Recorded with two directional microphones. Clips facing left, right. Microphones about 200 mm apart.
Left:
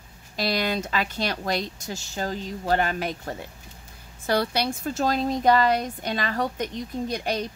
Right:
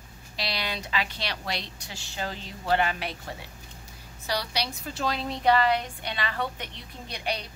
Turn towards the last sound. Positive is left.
turn(degrees=45)  # may be behind; listen again after turning